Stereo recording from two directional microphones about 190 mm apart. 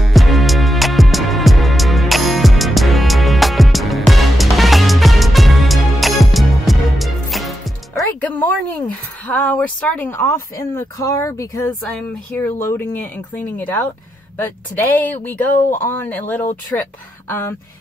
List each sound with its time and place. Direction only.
0.0 s music: centre (ahead or behind)
9.3 s speech: 10° left (ahead or behind)
15.5 s speech: 45° left (ahead or behind)
15.9 s speech: 10° left (ahead or behind)